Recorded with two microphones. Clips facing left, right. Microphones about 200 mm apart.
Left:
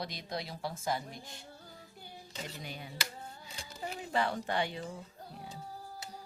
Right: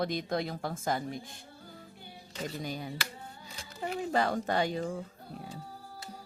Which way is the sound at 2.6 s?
40° right (ahead or behind).